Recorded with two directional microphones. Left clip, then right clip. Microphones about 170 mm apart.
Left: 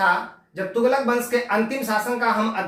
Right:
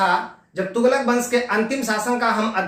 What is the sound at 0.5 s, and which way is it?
Speech, 20° right (ahead or behind).